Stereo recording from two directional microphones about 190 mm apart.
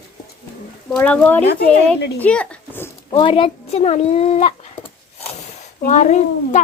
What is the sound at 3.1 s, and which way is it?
A child's voice, 25° left (ahead or behind).